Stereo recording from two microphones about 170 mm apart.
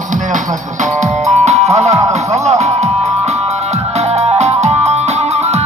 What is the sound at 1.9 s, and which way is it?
Music, 20° right (ahead or behind).